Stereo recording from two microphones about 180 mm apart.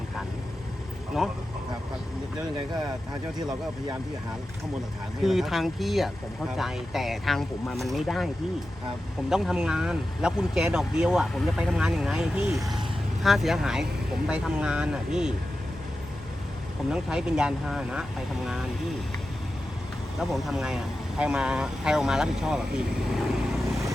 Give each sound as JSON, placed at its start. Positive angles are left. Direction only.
{"t": 3.3, "sound": "speech", "side_deg": -25}
{"t": 5.2, "sound": "speech", "side_deg": 0}
{"t": 9.3, "sound": "speech", "side_deg": 0}
{"t": 16.9, "sound": "speech", "side_deg": -5}
{"t": 20.1, "sound": "speech", "side_deg": 0}